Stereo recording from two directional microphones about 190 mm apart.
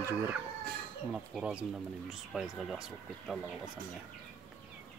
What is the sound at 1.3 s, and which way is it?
Speech, 5° right (ahead or behind).